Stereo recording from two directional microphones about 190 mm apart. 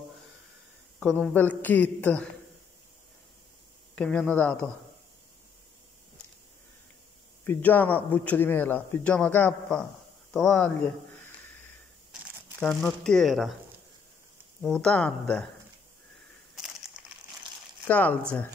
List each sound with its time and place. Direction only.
0.9 s speech: 5° left (ahead or behind)
3.9 s speech: 5° left (ahead or behind)
7.4 s speech: 10° left (ahead or behind)
12.5 s speech: 5° left (ahead or behind)
14.6 s speech: 5° left (ahead or behind)
16.5 s crushing: 5° right (ahead or behind)
17.8 s speech: 10° left (ahead or behind)